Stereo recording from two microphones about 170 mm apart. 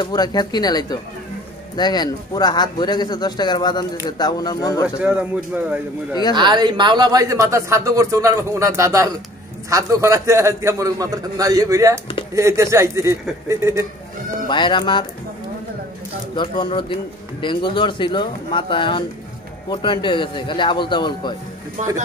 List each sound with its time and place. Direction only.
0.0 s speech: 25° left (ahead or behind)
4.8 s speech: 5° right (ahead or behind)
6.3 s speech: 25° right (ahead or behind)
14.5 s speech: 30° left (ahead or behind)
16.3 s speech: 30° left (ahead or behind)
21.8 s speech: 40° right (ahead or behind)